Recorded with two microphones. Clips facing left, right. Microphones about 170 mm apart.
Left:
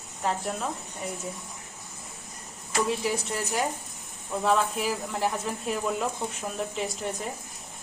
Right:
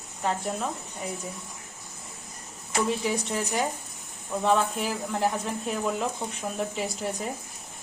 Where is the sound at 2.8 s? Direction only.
Centre (ahead or behind).